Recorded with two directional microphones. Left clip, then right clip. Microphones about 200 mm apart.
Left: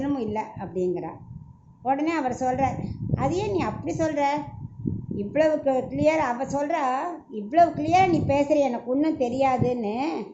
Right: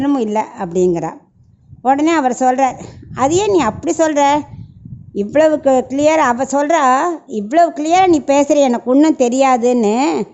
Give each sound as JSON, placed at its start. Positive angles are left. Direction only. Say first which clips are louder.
{"t": 0.0, "sound": "speech", "louder": "right 12 dB", "side_deg": -55}